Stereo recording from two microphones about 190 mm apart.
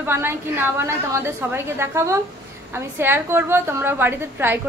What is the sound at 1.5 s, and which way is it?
A woman's voice, 15° right (ahead or behind).